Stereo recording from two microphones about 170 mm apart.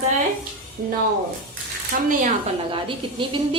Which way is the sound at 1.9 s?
55° right (ahead or behind).